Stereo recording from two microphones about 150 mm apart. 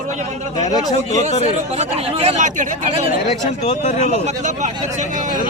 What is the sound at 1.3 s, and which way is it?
Speech, 45° left (ahead or behind).